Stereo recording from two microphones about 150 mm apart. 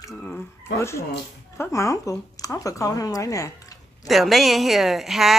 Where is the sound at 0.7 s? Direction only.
20° left (ahead or behind).